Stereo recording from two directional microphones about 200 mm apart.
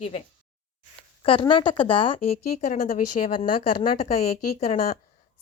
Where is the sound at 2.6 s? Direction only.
45° left (ahead or behind).